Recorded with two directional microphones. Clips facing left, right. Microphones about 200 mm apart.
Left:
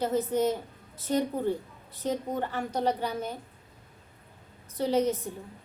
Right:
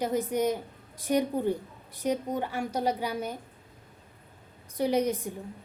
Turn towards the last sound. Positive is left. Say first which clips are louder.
# even
turn(degrees=-15)  # may be behind; listen again after turning